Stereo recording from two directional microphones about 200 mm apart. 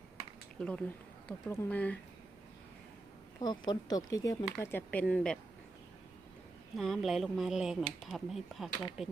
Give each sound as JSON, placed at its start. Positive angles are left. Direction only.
{"t": 0.6, "sound": "speech", "side_deg": 5}
{"t": 3.4, "sound": "speech", "side_deg": 20}
{"t": 6.7, "sound": "speech", "side_deg": 0}